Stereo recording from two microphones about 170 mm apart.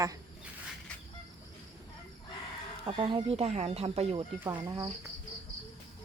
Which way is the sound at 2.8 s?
30° right (ahead or behind).